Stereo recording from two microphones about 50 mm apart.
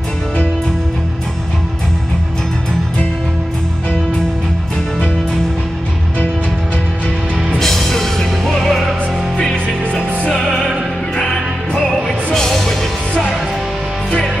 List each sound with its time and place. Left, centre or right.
7.5 s music: centre
10.2 s music: centre